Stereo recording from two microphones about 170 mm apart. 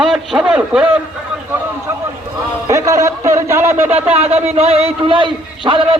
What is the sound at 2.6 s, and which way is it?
A man's voice, 20° right (ahead or behind).